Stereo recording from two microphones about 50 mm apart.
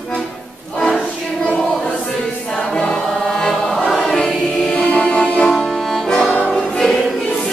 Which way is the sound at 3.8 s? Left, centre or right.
Centre.